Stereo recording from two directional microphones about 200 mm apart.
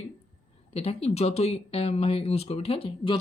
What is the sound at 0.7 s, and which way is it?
A woman's voice, 30° left (ahead or behind).